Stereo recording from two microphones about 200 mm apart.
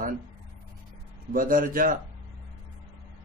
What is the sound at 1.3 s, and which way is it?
Speech, 45° right (ahead or behind).